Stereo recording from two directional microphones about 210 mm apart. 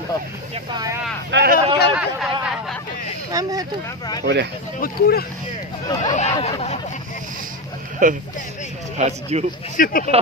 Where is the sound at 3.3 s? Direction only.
20° right (ahead or behind).